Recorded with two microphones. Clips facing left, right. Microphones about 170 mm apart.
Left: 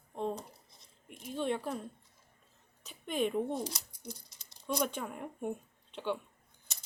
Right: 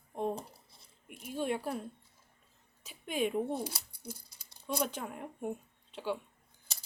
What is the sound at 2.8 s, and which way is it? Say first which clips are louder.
Speech: even; 5° right (ahead or behind).